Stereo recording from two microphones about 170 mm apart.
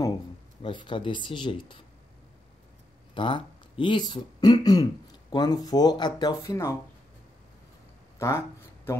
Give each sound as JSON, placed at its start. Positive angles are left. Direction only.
{"t": 0.6, "sound": "speech", "side_deg": 30}
{"t": 3.2, "sound": "speech", "side_deg": 30}
{"t": 8.2, "sound": "a sound", "side_deg": 15}